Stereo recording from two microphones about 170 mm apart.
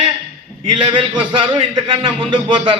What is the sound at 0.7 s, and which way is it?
A man's voice, 30° right (ahead or behind).